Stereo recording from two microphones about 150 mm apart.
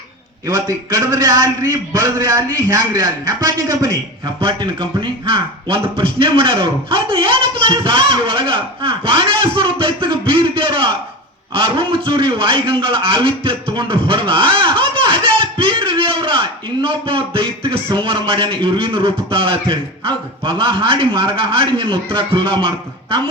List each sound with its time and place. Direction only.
0.4 s a man's voice: 20° right (ahead or behind)
4.4 s a man's voice: 35° right (ahead or behind)